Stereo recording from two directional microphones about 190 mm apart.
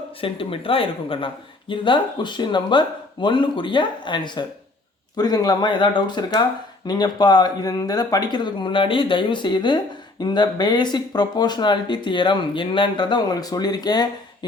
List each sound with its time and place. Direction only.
0.2 s speech: 30° left (ahead or behind)